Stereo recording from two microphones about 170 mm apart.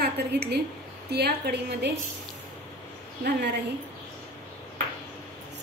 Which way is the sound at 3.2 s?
80° right.